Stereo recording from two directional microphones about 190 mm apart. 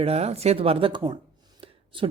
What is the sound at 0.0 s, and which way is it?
Speech, 35° right (ahead or behind).